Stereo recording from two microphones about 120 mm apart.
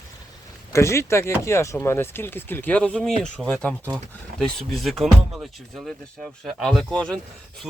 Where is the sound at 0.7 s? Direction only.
25° left (ahead or behind).